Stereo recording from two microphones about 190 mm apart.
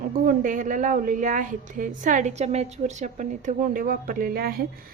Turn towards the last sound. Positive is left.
turn(degrees=-50)  # may be behind; listen again after turning